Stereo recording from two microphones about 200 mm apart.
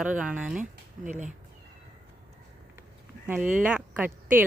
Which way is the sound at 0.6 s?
40° right (ahead or behind).